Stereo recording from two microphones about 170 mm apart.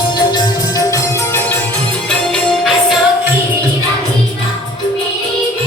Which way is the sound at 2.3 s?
Centre (ahead or behind).